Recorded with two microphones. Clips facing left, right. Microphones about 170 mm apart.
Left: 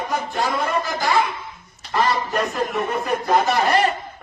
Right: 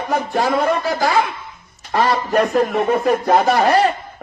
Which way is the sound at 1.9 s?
55° right (ahead or behind).